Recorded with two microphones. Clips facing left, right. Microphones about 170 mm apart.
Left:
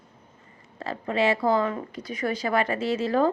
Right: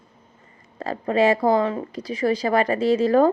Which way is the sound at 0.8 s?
40° right (ahead or behind).